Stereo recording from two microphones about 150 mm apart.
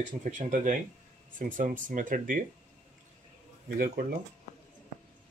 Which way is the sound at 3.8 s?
90° right.